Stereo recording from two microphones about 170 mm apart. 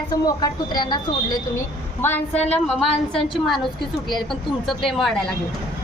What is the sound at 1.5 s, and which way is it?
Speech, 15° left (ahead or behind).